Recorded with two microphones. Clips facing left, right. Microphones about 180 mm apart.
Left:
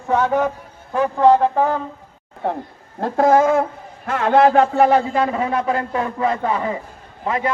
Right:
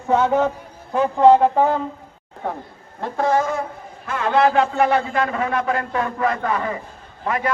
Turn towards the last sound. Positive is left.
turn(degrees=25)  # may be behind; listen again after turning